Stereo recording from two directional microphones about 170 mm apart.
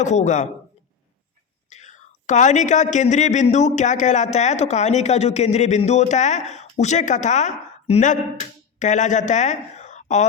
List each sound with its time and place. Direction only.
0.0 s speech: 45° left (ahead or behind)
1.7 s speech: 45° left (ahead or behind)